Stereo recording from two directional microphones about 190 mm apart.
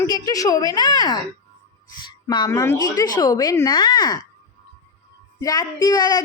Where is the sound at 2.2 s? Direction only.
20° left (ahead or behind).